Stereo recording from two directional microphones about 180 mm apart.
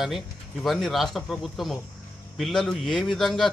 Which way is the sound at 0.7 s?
Centre (ahead or behind).